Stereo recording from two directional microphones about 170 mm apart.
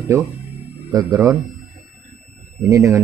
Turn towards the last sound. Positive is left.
turn(degrees=-20)  # may be behind; listen again after turning